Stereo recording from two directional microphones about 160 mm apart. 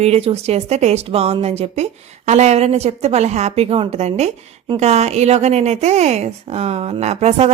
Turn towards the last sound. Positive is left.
turn(degrees=-45)  # may be behind; listen again after turning